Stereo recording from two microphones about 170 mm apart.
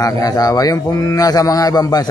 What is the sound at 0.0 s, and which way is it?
A man's voice, 20° left (ahead or behind).